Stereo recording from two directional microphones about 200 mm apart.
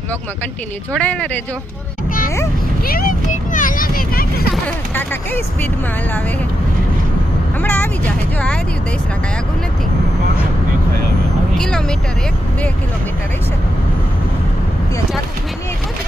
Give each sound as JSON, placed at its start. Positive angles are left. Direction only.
{"t": 0.9, "sound": "speech", "side_deg": 5}
{"t": 2.9, "sound": "a sound", "side_deg": 45}
{"t": 4.9, "sound": "speech", "side_deg": 10}
{"t": 7.6, "sound": "speech", "side_deg": 10}
{"t": 11.5, "sound": "speech", "side_deg": 5}